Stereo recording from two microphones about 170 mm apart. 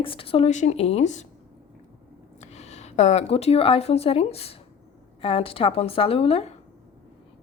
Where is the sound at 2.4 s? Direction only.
40° left (ahead or behind).